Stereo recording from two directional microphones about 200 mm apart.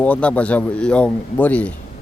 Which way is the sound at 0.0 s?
5° left (ahead or behind).